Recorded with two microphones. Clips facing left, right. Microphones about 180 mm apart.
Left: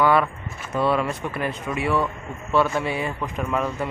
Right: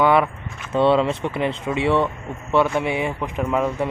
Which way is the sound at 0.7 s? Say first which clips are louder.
Right 5 dB; 25° right (ahead or behind).